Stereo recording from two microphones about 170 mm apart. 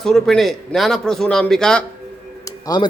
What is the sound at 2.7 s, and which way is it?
Speech, 25° left (ahead or behind).